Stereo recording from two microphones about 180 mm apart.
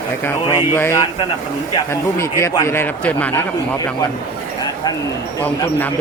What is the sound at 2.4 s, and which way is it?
A man's voice, 15° left (ahead or behind).